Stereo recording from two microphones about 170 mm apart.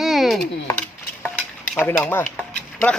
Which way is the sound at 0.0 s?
Centre (ahead or behind).